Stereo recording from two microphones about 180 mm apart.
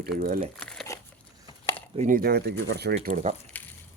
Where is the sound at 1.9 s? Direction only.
40° right (ahead or behind).